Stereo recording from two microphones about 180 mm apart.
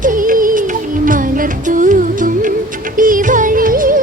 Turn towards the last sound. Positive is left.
turn(degrees=-50)  # may be behind; listen again after turning